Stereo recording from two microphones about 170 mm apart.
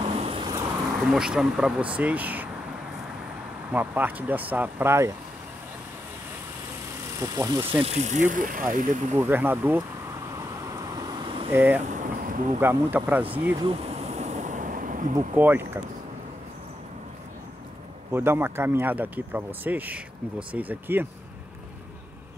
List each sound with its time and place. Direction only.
0.0 s vehicle: 35° right (ahead or behind)
1.1 s speech: 5° right (ahead or behind)
3.7 s speech: 10° right (ahead or behind)
7.2 s speech: 20° right (ahead or behind)
7.8 s speech: 40° right (ahead or behind)
9.1 s speech: 10° right (ahead or behind)
10.3 s vehicle: 25° right (ahead or behind)
11.5 s speech: 10° right (ahead or behind)
11.9 s vehicle: 50° right (ahead or behind)
12.5 s speech: 10° right (ahead or behind)
13.7 s a sound: 35° right (ahead or behind)
15.1 s speech: 10° right (ahead or behind)
18.1 s speech: 15° right (ahead or behind)